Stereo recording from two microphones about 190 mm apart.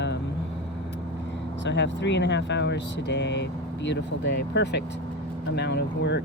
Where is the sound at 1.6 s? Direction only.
70° left (ahead or behind).